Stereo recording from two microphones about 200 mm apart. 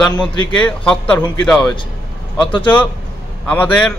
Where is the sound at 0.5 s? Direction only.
5° left (ahead or behind).